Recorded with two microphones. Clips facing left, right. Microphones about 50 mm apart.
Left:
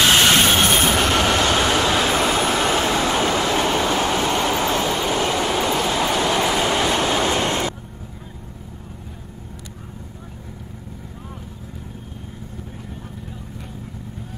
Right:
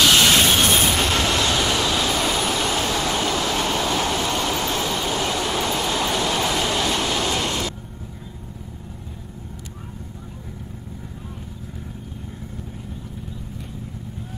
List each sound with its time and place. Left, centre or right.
0.0 s train: left
5.8 s vehicle: centre; by 7.7 s left